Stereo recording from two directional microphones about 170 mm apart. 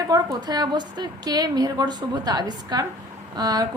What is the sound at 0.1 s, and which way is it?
A woman's voice, 25° right (ahead or behind).